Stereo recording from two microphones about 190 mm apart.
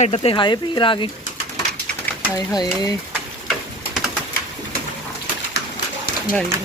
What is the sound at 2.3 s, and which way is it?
Speech, 20° left (ahead or behind).